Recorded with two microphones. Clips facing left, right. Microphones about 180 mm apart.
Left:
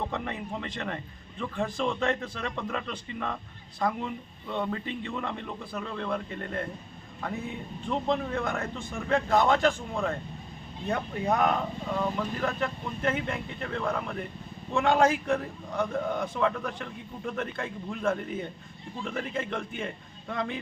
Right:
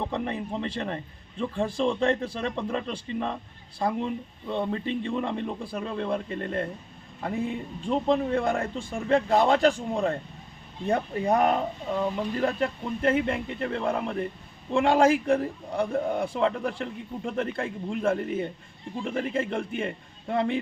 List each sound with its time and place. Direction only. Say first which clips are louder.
0.1 s a man's voice: right 4 dB; 30° right (ahead or behind)
7.9 s a man's voice: right 5 dB; 30° right (ahead or behind)